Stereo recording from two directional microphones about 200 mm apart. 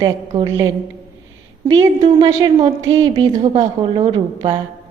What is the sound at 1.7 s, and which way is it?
A woman's voice, 20° right (ahead or behind).